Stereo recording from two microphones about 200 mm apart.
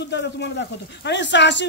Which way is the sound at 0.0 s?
60° left (ahead or behind).